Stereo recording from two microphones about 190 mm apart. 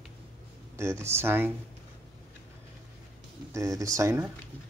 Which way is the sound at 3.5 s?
15° right (ahead or behind).